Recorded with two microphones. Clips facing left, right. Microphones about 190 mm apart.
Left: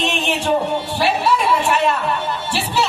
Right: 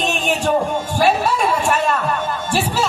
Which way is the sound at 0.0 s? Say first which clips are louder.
Right 1 dB; 45° right (ahead or behind).